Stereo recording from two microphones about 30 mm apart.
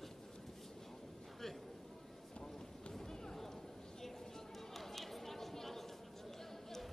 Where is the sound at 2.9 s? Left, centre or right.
Centre.